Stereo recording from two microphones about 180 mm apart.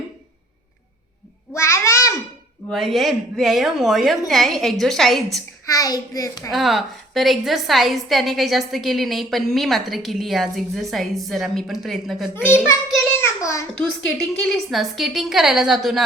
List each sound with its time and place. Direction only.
1.5 s a sound: 15° left (ahead or behind)
2.6 s a woman's voice: centre (ahead or behind)
5.6 s a child's voice: 20° left (ahead or behind)
6.5 s a woman's voice: centre (ahead or behind)
12.3 s a child's voice: 10° left (ahead or behind)
13.1 s a sound: 15° left (ahead or behind)
13.7 s a woman's voice: centre (ahead or behind)